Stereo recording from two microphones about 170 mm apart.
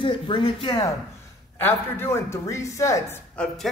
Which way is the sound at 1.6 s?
10° left (ahead or behind).